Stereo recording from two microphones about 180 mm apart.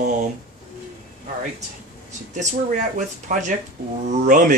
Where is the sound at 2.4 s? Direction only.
40° right (ahead or behind).